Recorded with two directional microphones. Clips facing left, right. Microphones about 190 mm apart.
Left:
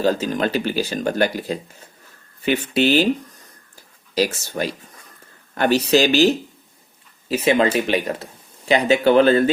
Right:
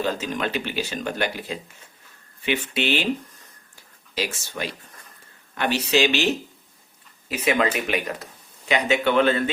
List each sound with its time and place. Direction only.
0.0 s speech: 35° left (ahead or behind)
4.1 s speech: 40° left (ahead or behind)